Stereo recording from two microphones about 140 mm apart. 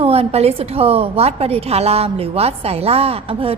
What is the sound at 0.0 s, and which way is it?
A woman's voice, 45° right (ahead or behind).